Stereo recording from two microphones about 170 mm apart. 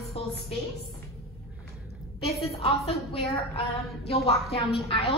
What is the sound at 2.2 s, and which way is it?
Speech, 35° left (ahead or behind).